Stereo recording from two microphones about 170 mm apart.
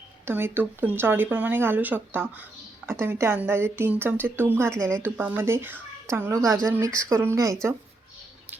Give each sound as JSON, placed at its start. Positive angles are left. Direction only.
{"t": 0.3, "sound": "speech", "side_deg": -15}